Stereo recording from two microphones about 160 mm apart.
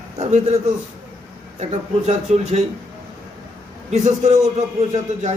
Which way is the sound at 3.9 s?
45° right (ahead or behind).